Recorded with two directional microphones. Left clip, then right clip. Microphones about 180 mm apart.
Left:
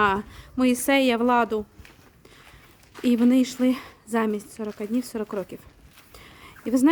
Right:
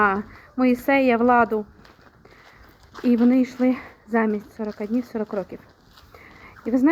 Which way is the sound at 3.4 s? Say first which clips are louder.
Right 2 dB; 40° left (ahead or behind).